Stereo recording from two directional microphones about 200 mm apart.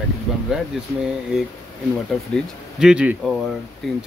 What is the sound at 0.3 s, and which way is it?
Speech, centre (ahead or behind).